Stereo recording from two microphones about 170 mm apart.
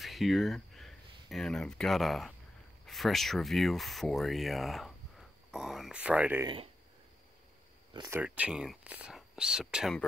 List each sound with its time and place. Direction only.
0.0 s speech: centre (ahead or behind)
6.4 s speech: 30° right (ahead or behind)
8.1 s speech: 10° right (ahead or behind)